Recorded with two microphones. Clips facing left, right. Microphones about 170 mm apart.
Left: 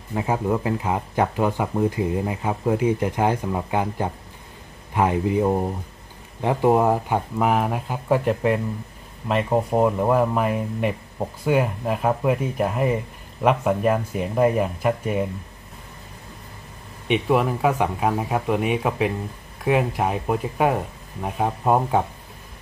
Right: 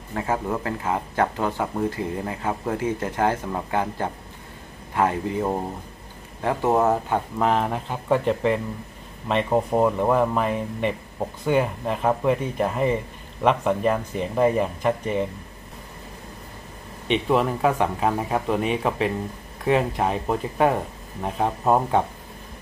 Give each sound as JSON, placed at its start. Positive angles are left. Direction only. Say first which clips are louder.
{"t": 0.1, "sound": "speech", "louder": "left 3 dB", "side_deg": 15}
{"t": 17.1, "sound": "speech", "louder": "left 1 dB", "side_deg": 10}